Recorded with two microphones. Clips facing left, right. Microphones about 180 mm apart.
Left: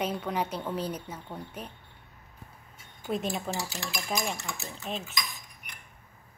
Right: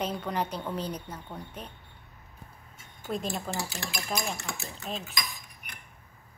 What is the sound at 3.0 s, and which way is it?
A woman's voice, 5° left (ahead or behind).